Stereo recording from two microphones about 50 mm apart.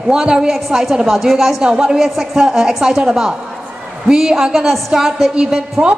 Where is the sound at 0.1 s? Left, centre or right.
Centre.